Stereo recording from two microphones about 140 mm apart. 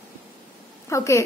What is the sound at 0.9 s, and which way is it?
Speech, 20° left (ahead or behind).